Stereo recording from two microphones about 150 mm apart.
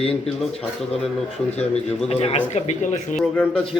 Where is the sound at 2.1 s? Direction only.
45° left (ahead or behind).